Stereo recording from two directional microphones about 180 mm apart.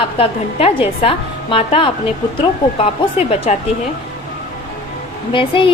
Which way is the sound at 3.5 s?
40° left (ahead or behind).